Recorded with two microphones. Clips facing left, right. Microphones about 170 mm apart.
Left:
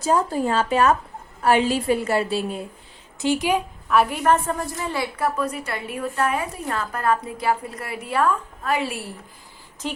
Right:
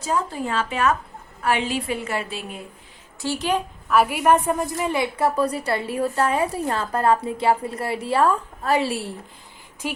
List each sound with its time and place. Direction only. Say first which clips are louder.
0.0 s a woman's voice: left 4 dB; 40° left (ahead or behind)
3.2 s speech: left 3 dB; 15° left (ahead or behind)
3.8 s a woman's voice: right 1 dB; 5° right (ahead or behind); by 9.0 s 30° right (ahead or behind)
9.8 s speech: even; 10° right (ahead or behind)